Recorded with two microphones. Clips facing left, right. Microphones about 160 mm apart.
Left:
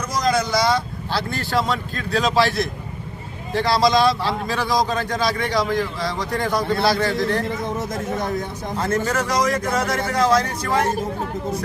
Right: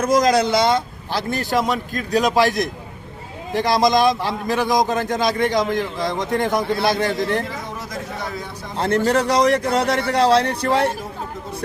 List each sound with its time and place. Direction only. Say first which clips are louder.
0.0 s speech: right 5 dB; 40° right (ahead or behind)
0.5 s a man's voice: right 2 dB; 20° right (ahead or behind)
9.0 s speech: right 5 dB; 30° right (ahead or behind)